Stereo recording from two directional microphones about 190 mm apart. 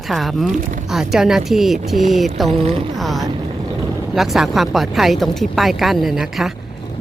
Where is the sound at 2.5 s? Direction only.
30° right (ahead or behind).